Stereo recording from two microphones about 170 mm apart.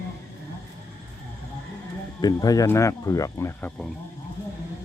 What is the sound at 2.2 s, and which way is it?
Speech, 20° left (ahead or behind).